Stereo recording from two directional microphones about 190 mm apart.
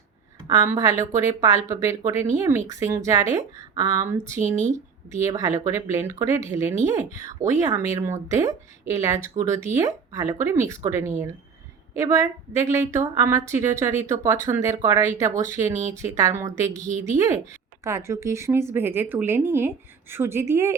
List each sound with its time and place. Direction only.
0.4 s speech: 15° right (ahead or behind)